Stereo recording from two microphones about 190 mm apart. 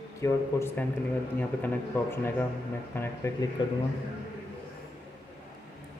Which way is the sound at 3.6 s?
25° left (ahead or behind).